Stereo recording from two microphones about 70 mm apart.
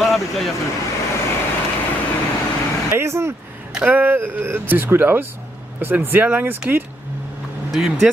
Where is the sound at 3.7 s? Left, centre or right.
Centre.